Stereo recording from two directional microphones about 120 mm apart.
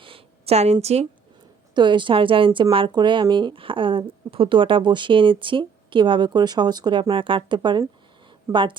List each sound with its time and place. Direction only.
0.0 s a sound: 50° right (ahead or behind)
1.7 s speech: 40° right (ahead or behind)
8.5 s speech: 20° right (ahead or behind)